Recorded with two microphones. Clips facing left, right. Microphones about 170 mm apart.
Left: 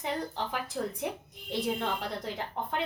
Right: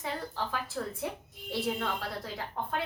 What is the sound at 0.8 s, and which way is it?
A woman's voice, 20° left (ahead or behind).